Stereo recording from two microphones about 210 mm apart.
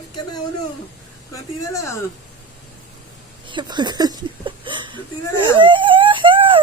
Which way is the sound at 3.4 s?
20° right (ahead or behind).